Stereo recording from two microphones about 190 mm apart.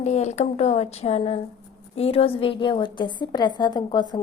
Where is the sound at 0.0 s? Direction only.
35° left (ahead or behind).